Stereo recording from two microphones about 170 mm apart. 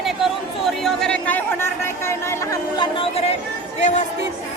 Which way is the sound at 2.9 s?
35° left (ahead or behind).